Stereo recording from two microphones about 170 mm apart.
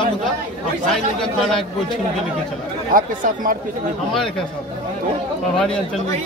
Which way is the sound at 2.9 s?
55° right (ahead or behind).